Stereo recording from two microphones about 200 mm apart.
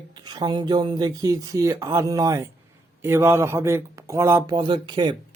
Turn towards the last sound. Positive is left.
turn(degrees=-25)  # may be behind; listen again after turning